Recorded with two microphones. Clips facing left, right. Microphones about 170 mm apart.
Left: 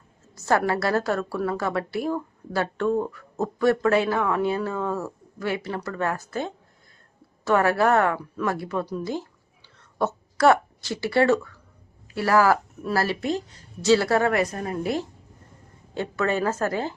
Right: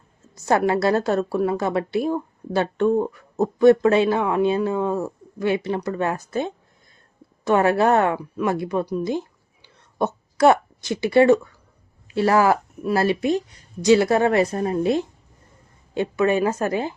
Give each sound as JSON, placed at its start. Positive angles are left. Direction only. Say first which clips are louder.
{"t": 0.4, "sound": "a woman's voice", "louder": "right 4 dB", "side_deg": -20}